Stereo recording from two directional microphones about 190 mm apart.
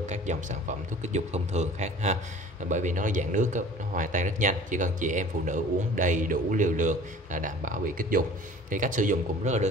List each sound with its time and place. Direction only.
0.1 s speech: 40° right (ahead or behind)